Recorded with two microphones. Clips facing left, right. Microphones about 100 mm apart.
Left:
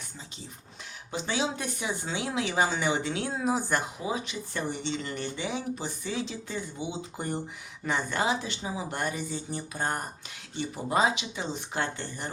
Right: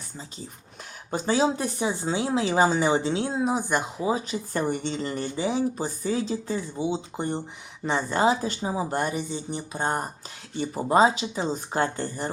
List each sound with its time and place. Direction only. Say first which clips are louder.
1.1 s speech: right 7 dB; 40° right (ahead or behind); by 3.8 s 15° right (ahead or behind)
4.0 s a woman's voice: right 6 dB; 35° right (ahead or behind)